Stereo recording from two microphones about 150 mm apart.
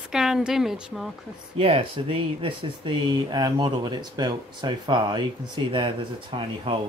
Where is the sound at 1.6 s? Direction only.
40° right (ahead or behind).